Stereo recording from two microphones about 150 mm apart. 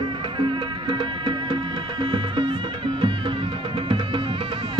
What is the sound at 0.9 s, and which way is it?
Music, 30° right (ahead or behind).